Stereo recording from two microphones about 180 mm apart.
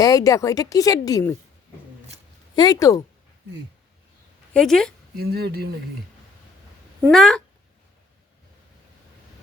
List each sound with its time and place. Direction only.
0.0 s speech: 20° left (ahead or behind)
2.6 s speech: 20° left (ahead or behind)
4.5 s a woman's voice: 5° left (ahead or behind)
5.1 s speech: 60° right (ahead or behind)
7.1 s a woman's voice: centre (ahead or behind)